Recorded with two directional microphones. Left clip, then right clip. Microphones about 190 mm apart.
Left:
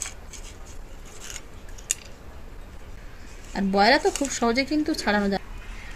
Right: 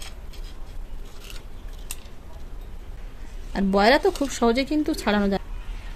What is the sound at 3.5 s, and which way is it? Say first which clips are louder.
A woman's voice: right 1 dB; 60° right (ahead or behind).